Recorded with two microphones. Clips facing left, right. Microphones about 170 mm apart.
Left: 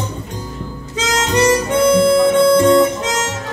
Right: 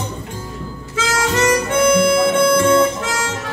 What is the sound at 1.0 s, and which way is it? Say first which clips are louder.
Harmonica: left 2 dB; 20° left (ahead or behind).